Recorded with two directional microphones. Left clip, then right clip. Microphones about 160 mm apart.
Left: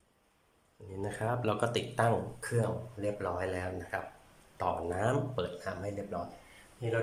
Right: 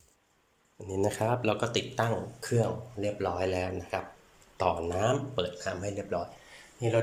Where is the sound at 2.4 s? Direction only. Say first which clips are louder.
Right 4 dB; 15° right (ahead or behind).